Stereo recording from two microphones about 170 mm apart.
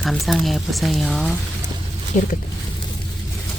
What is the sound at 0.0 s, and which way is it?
Speech, centre (ahead or behind).